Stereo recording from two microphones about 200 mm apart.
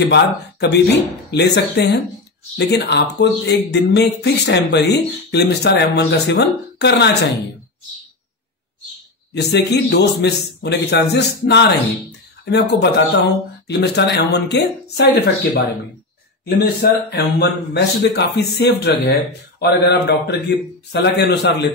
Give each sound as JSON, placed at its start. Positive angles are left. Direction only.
{"t": 0.0, "sound": "speech", "side_deg": 60}
{"t": 9.3, "sound": "speech", "side_deg": 55}